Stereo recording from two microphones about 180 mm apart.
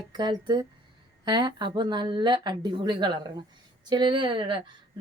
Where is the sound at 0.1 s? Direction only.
25° right (ahead or behind).